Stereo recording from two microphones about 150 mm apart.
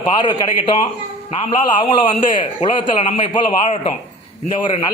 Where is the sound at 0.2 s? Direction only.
30° left (ahead or behind).